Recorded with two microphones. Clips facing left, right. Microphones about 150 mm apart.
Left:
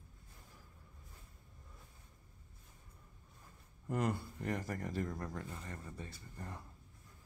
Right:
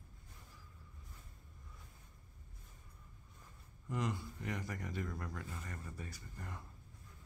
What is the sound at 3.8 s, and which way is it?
Speech, 55° left (ahead or behind).